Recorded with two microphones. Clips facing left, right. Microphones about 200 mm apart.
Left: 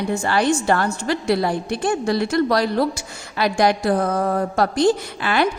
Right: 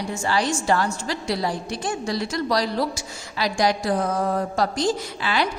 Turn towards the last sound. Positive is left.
turn(degrees=55)  # may be behind; listen again after turning